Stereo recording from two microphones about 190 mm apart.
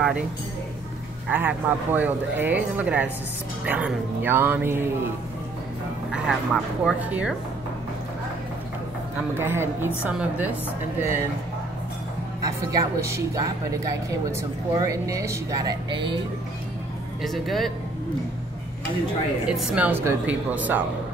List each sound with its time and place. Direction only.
1.3 s a woman's voice: 10° right (ahead or behind)
6.1 s speech: 5° right (ahead or behind)
9.3 s a woman's voice: 10° right (ahead or behind)
12.4 s a woman's voice: 20° right (ahead or behind)
17.2 s speech: centre (ahead or behind)
19.4 s a woman's voice: 5° right (ahead or behind)